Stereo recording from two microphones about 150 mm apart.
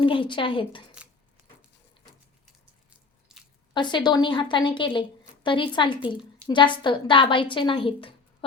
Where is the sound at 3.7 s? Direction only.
30° left (ahead or behind).